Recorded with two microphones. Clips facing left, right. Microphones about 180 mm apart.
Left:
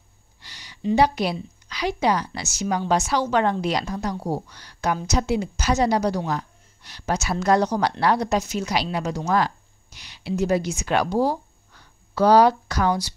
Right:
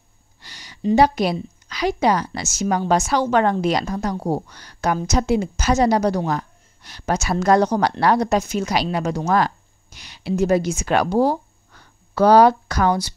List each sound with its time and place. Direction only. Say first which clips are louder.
0.4 s a woman's voice: right 4 dB; 45° right (ahead or behind)